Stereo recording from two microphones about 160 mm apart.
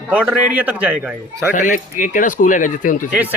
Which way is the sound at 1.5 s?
55° left (ahead or behind).